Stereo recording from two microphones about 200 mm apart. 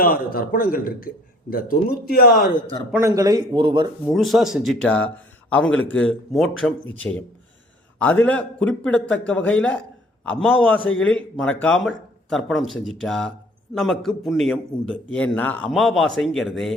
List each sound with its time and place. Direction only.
0.0 s a man's voice: 45° left (ahead or behind)
3.0 s speech: 20° right (ahead or behind)
4.0 s a man's voice: centre (ahead or behind)